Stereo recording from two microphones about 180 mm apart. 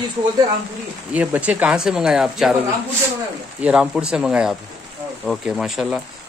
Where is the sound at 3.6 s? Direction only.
5° right (ahead or behind).